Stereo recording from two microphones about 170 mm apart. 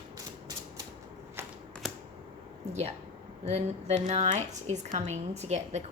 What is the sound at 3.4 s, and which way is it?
A woman's voice, 40° right (ahead or behind).